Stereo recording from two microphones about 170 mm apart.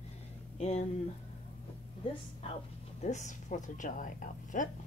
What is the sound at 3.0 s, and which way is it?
Speech, 45° left (ahead or behind).